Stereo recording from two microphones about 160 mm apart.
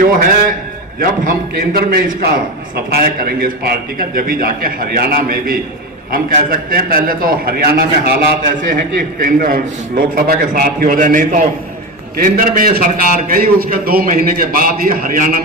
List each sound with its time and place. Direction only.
0.1 s a man's voice: 60° right (ahead or behind); by 8.4 s 80° right
9.0 s a man's voice: 60° right (ahead or behind)